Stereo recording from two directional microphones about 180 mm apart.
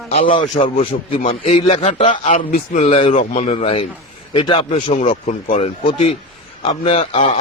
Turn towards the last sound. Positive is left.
turn(degrees=35)  # may be behind; listen again after turning